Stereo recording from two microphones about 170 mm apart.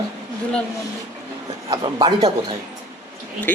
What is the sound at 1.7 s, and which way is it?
Speech, 25° right (ahead or behind).